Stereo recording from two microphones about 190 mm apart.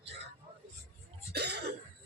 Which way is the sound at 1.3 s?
60° right (ahead or behind).